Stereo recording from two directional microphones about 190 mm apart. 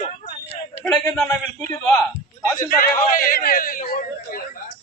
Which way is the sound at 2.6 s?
50° left (ahead or behind).